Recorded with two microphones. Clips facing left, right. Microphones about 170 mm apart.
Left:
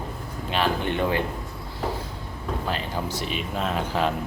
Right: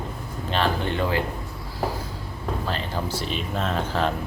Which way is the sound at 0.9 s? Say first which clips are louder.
Even; 20° left (ahead or behind).